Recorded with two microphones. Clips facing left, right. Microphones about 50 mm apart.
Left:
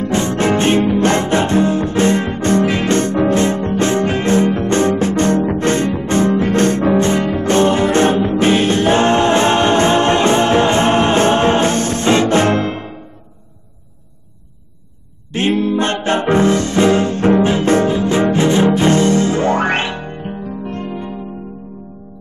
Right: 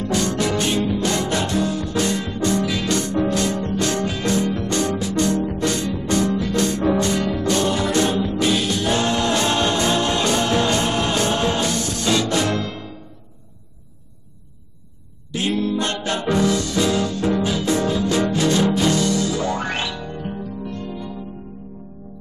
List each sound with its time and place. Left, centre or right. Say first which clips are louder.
0.0 s music: left 5 dB; left
15.3 s music: left 6 dB; left